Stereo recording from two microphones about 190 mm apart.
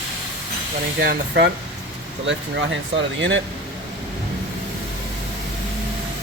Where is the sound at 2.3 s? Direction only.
75° right (ahead or behind).